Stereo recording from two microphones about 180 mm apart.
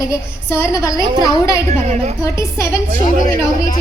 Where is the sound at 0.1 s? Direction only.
15° left (ahead or behind).